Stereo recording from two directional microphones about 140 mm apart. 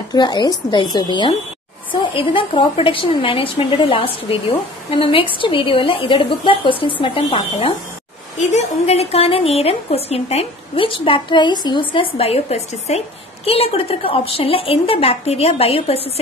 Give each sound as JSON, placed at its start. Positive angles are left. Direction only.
{"t": 0.1, "sound": "a woman's voice", "side_deg": 30}
{"t": 8.4, "sound": "a woman's voice", "side_deg": 55}